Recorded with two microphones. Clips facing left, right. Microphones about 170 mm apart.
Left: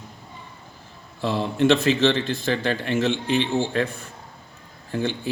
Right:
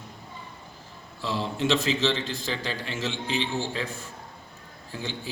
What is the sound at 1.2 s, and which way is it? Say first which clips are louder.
A man's voice: left 7 dB; 60° left (ahead or behind).